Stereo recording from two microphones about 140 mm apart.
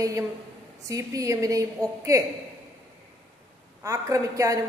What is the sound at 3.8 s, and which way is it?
Speech, 25° right (ahead or behind).